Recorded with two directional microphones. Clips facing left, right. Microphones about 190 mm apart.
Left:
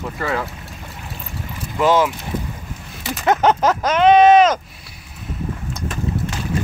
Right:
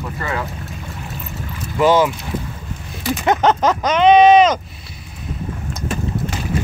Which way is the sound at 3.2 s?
5° left (ahead or behind).